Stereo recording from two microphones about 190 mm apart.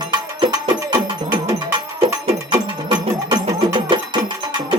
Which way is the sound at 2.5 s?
25° right (ahead or behind).